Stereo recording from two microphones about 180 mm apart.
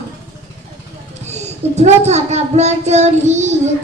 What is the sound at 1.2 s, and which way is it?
A child's voice, 40° right (ahead or behind).